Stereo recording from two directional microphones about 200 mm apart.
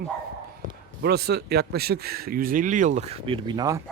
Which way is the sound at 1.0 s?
55° right (ahead or behind).